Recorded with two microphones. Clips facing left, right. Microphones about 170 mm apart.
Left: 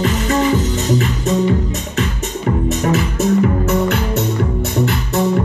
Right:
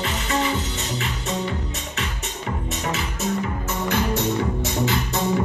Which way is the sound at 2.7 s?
50° left (ahead or behind).